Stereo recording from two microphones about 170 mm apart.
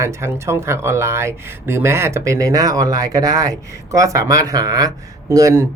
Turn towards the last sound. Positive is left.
turn(degrees=-15)  # may be behind; listen again after turning